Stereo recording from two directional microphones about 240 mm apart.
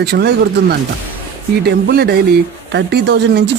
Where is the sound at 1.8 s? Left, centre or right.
Right.